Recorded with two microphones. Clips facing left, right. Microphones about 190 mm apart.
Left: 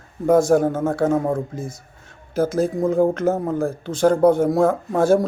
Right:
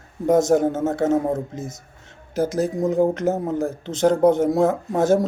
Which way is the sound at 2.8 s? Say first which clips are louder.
Left 1 dB; 15° right (ahead or behind).